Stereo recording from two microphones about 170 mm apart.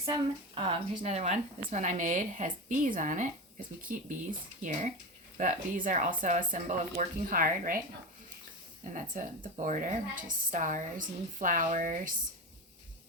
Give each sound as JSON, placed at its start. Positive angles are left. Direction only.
{"t": 0.0, "sound": "a woman's voice", "side_deg": -25}
{"t": 8.8, "sound": "a woman's voice", "side_deg": -50}